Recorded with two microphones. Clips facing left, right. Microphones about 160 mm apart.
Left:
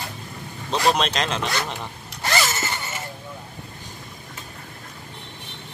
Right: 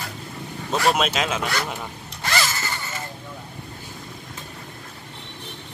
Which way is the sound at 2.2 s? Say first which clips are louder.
Left 2 dB; 25° left (ahead or behind).